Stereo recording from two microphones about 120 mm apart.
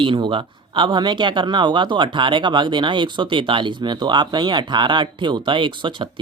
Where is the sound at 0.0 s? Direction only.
45° right (ahead or behind).